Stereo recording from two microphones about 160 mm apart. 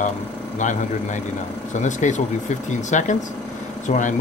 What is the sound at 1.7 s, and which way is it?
Speech, 50° left (ahead or behind).